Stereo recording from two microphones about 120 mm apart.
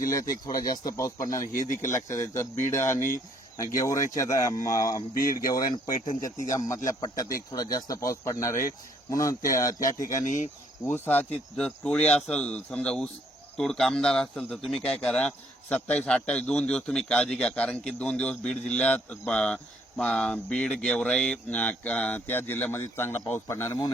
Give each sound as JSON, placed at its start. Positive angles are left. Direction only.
{"t": 0.0, "sound": "speech", "side_deg": 30}
{"t": 6.1, "sound": "speech", "side_deg": 90}
{"t": 6.5, "sound": "speech", "side_deg": 25}
{"t": 10.2, "sound": "speech", "side_deg": 90}
{"t": 10.8, "sound": "a man's voice", "side_deg": 15}